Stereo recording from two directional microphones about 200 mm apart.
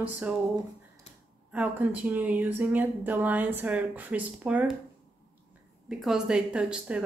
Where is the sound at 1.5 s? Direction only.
10° right (ahead or behind).